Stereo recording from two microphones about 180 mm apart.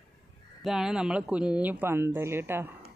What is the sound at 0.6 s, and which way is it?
Speech, centre (ahead or behind).